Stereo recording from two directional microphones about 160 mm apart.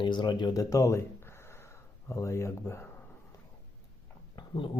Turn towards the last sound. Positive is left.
turn(degrees=30)  # may be behind; listen again after turning